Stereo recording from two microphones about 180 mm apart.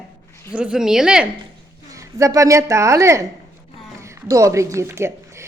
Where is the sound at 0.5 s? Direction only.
5° right (ahead or behind).